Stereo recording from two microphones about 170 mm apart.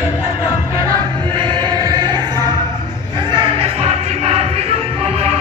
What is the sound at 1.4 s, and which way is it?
Choir, 25° right (ahead or behind).